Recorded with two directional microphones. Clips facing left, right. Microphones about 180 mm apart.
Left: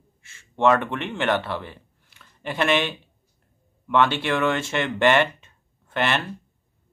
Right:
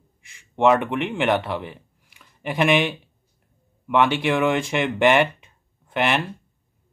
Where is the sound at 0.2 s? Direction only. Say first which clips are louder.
Right 2 dB; 15° right (ahead or behind).